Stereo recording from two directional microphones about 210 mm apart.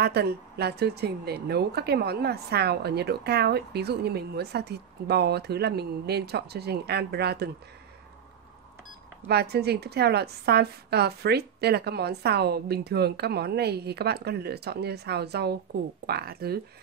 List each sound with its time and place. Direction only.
0.0 s speech: 50° right (ahead or behind)
9.3 s speech: 50° right (ahead or behind)